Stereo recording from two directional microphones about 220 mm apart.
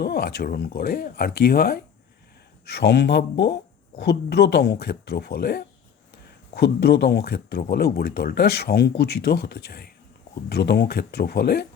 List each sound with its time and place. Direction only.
0.0 s speech: 45° left (ahead or behind)